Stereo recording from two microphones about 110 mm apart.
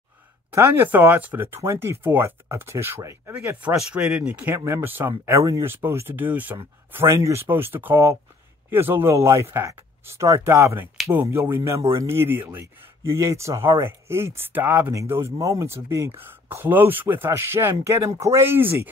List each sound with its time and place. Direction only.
0.8 s speech: 15° right (ahead or behind)
3.6 s speech: 10° right (ahead or behind)
4.6 s speech: 25° right (ahead or behind)